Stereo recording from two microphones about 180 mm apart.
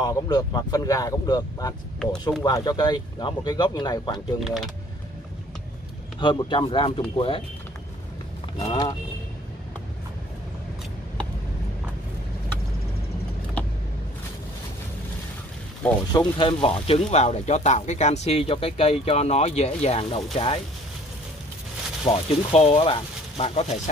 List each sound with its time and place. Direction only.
0.0 s speech: 20° left (ahead or behind)
4.4 s speech: centre (ahead or behind)
6.1 s speech: 25° left (ahead or behind)
8.5 s speech: 20° left (ahead or behind)
16.1 s speech: 25° left (ahead or behind)
22.0 s speech: 35° left (ahead or behind)